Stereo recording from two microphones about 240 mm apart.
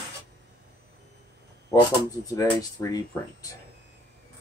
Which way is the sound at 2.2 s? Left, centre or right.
Centre.